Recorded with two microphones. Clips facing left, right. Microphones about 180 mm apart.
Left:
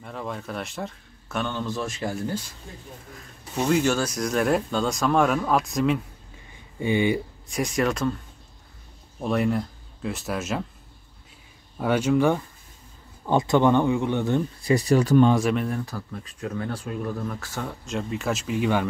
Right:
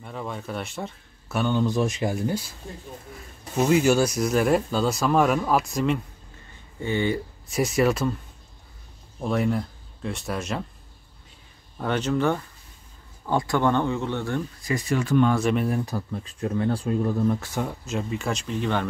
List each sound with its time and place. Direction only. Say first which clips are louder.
0.0 s speech: even; centre (ahead or behind)
3.5 s speech: right 3 dB; 5° right (ahead or behind)
6.8 s speech: left 3 dB; 15° left (ahead or behind)
7.4 s speech: right 3 dB; 5° right (ahead or behind)
9.2 s speech: left 1 dB; centre (ahead or behind)
11.8 s speech: left 3 dB; 10° left (ahead or behind)
14.6 s speech: left 7 dB; 35° left (ahead or behind)
15.4 s speech: right 1 dB; 5° right (ahead or behind); by 17.5 s 25° right (ahead or behind)
17.8 s speech: even; centre (ahead or behind)